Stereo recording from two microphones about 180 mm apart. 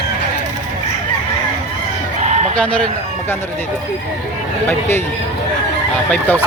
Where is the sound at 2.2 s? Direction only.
40° right (ahead or behind).